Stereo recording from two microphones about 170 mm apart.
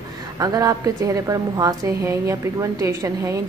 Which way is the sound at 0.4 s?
20° right (ahead or behind).